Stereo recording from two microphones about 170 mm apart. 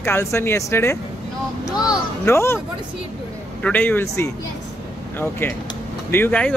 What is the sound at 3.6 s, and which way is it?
Speech, 10° left (ahead or behind).